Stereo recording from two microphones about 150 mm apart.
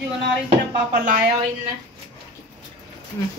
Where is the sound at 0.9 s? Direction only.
70° right (ahead or behind).